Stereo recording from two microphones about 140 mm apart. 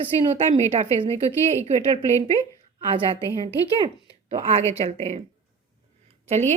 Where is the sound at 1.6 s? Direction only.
50° right (ahead or behind).